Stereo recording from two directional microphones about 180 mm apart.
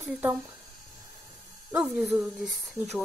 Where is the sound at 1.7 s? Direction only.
5° right (ahead or behind).